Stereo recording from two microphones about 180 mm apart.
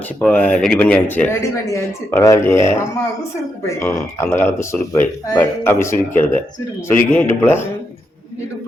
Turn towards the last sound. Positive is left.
turn(degrees=15)  # may be behind; listen again after turning